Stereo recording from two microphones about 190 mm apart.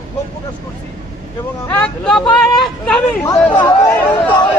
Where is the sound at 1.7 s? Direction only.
5° left (ahead or behind).